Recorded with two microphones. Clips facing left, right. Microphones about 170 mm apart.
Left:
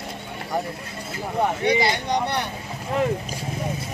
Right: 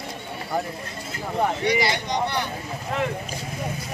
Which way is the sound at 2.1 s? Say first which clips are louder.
Left 1 dB; 60° left (ahead or behind).